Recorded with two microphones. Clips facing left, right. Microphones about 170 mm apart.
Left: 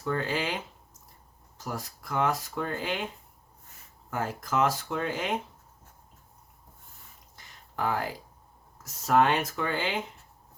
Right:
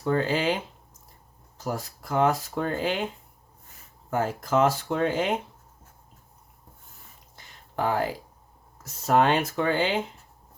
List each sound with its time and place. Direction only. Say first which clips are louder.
0.0 s speech: right 5 dB; 30° right (ahead or behind)
4.1 s speech: right 6 dB; 30° right (ahead or behind)
7.8 s speech: right 4 dB; 30° right (ahead or behind)